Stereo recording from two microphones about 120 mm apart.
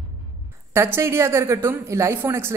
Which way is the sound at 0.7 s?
20° right (ahead or behind).